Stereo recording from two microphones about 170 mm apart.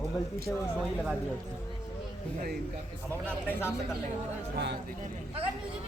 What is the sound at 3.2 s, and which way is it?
Speech, 10° left (ahead or behind).